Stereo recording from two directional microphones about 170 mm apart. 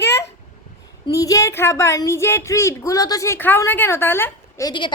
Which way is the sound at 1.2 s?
20° left (ahead or behind).